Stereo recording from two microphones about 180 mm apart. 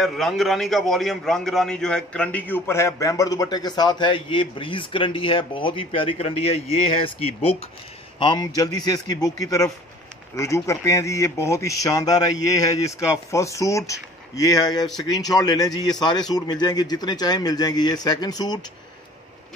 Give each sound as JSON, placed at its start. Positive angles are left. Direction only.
{"t": 0.0, "sound": "a man's voice", "side_deg": 0}